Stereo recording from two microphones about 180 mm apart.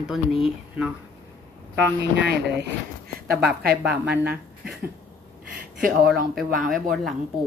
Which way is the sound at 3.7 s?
5° right (ahead or behind).